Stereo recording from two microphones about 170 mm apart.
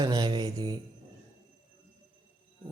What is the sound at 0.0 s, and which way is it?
Speech, 25° right (ahead or behind).